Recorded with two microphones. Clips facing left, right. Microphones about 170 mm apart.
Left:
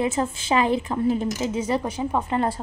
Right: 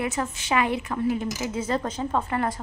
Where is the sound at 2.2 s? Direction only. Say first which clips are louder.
Left 3 dB; 25° left (ahead or behind).